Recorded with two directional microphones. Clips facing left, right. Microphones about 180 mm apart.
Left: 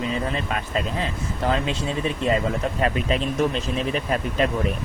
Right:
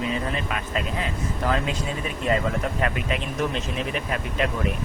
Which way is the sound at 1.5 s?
25° left (ahead or behind).